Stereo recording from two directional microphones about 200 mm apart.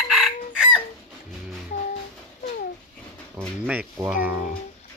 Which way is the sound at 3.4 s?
Centre (ahead or behind).